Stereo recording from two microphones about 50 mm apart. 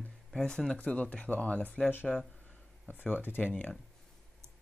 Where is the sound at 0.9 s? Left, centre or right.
Left.